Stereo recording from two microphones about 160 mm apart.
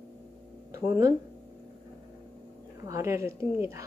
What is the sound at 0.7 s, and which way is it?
Speech, 20° right (ahead or behind).